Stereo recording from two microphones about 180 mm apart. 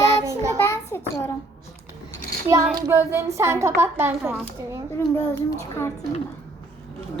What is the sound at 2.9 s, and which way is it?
Speech, 15° right (ahead or behind).